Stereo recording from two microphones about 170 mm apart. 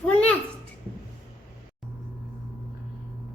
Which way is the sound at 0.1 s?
5° left (ahead or behind).